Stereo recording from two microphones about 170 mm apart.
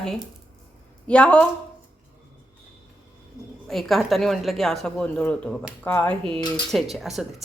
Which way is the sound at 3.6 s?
Centre (ahead or behind).